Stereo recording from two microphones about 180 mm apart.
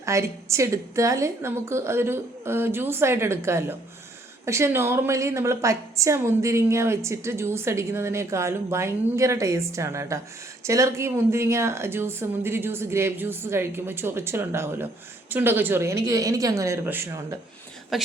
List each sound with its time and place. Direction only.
0.0 s a woman's voice: 15° right (ahead or behind)
17.9 s speech: centre (ahead or behind)